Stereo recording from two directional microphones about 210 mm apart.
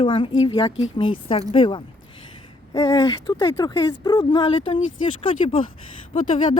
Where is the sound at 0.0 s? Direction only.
25° left (ahead or behind).